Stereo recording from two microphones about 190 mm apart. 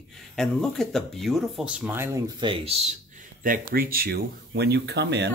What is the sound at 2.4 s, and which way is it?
Speech, 30° right (ahead or behind).